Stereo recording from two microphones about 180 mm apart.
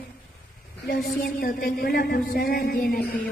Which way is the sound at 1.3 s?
55° left (ahead or behind).